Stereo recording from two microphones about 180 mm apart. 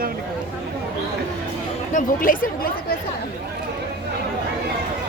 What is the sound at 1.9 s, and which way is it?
Speech, 45° left (ahead or behind).